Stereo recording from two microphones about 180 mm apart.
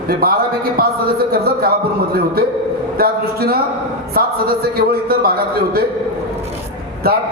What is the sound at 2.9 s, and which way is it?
Speech, 55° right (ahead or behind).